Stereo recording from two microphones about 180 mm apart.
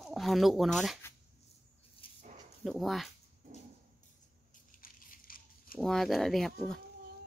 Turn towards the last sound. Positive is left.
turn(degrees=0)  # may be behind; listen again after turning